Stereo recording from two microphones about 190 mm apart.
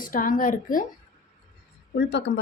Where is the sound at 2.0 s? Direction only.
65° left (ahead or behind).